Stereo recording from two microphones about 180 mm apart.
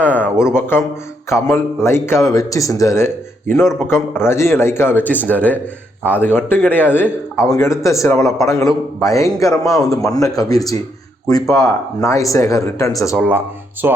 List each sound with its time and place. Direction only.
0.0 s a sound: 10° left (ahead or behind)
0.5 s speech: 15° left (ahead or behind)
3.7 s a man's voice: 5° right (ahead or behind)
3.9 s speech: 15° left (ahead or behind)
13.8 s speech: 10° right (ahead or behind)